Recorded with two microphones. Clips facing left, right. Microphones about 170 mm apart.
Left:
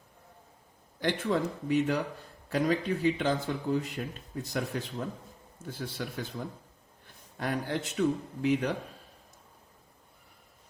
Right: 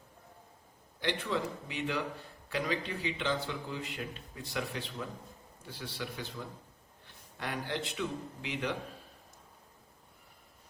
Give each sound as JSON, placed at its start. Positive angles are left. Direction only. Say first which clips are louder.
{"t": 1.0, "sound": "speech", "louder": "left 5 dB", "side_deg": 50}